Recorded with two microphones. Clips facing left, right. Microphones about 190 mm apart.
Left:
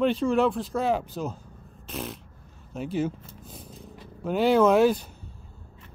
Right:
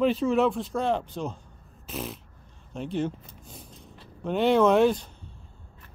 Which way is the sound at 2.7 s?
5° left (ahead or behind).